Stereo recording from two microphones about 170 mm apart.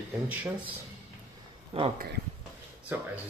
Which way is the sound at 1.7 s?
35° right (ahead or behind).